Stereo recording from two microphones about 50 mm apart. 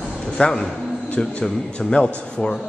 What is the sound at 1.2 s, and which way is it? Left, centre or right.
A man's voice, centre.